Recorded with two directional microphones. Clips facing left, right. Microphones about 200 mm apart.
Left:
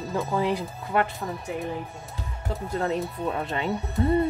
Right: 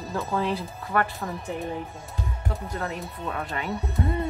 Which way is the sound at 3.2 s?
25° left (ahead or behind).